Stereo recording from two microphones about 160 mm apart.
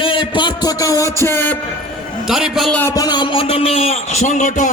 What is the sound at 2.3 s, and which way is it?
Speech, centre (ahead or behind).